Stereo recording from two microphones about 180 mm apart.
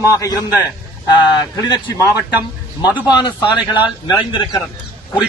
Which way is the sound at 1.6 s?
20° left (ahead or behind).